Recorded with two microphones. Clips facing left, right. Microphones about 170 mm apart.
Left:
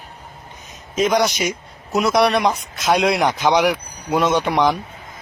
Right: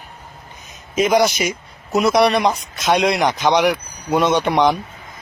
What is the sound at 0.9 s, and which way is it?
Speech, 5° right (ahead or behind).